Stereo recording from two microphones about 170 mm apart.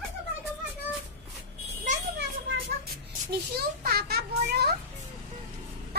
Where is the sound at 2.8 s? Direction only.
65° right (ahead or behind).